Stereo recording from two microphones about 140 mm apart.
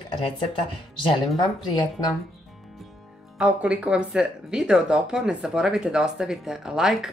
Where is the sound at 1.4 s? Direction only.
30° left (ahead or behind).